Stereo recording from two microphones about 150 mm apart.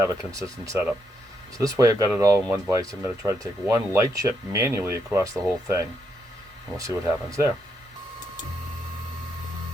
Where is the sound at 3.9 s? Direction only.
20° right (ahead or behind).